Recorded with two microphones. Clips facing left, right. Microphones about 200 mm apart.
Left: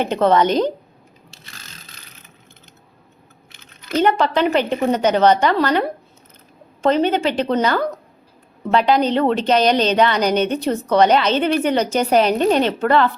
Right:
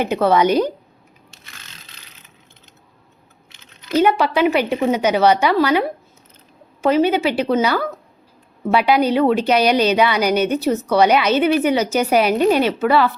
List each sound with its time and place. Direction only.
0.0 s speech: 10° right (ahead or behind)
1.3 s mechanisms: 35° left (ahead or behind)
3.6 s a sound: 55° left (ahead or behind)
3.9 s speech: 10° right (ahead or behind)
6.8 s speech: 10° right (ahead or behind)